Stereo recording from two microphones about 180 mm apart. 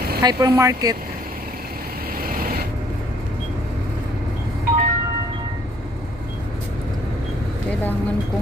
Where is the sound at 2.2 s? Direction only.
55° right (ahead or behind).